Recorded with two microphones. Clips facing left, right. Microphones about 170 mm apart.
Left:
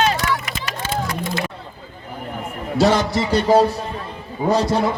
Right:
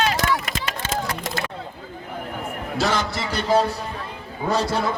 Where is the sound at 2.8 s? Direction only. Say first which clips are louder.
Left 7 dB; 35° left (ahead or behind).